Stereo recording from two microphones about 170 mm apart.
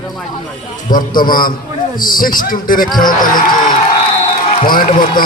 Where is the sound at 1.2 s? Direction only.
55° left (ahead or behind).